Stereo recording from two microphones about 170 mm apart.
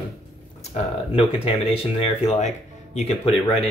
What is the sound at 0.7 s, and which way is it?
Speech, 35° left (ahead or behind).